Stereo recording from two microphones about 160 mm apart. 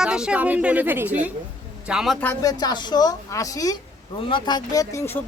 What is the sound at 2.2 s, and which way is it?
Speech, 20° left (ahead or behind).